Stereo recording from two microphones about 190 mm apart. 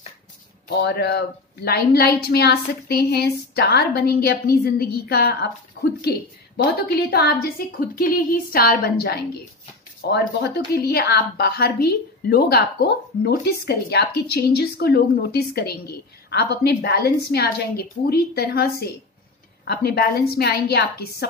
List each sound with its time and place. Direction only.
0.7 s a woman's voice: 65° left (ahead or behind)